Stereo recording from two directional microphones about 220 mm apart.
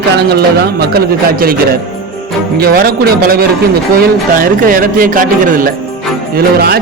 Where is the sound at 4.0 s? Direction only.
40° right (ahead or behind).